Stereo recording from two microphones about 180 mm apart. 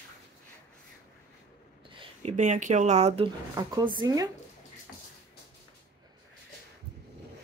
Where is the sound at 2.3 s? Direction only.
40° right (ahead or behind).